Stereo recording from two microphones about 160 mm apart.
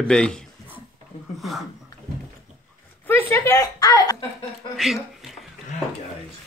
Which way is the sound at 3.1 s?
10° left (ahead or behind).